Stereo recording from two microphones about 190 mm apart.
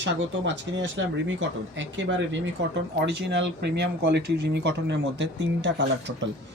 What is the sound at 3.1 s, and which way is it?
Speech, 65° right (ahead or behind).